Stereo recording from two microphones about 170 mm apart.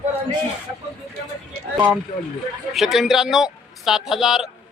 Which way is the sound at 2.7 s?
Centre (ahead or behind).